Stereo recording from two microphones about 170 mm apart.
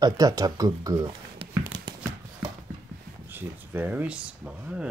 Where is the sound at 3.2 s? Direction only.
10° right (ahead or behind).